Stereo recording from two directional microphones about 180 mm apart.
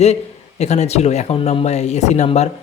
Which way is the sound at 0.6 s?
40° left (ahead or behind).